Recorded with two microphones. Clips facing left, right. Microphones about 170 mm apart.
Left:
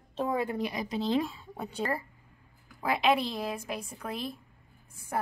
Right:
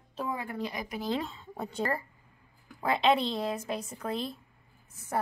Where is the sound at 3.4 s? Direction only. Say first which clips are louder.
Right 2 dB; 10° left (ahead or behind).